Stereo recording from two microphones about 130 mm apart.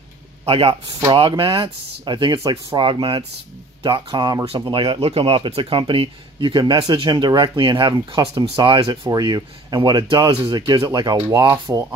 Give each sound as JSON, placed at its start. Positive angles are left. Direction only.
{"t": 0.5, "sound": "speech", "side_deg": -50}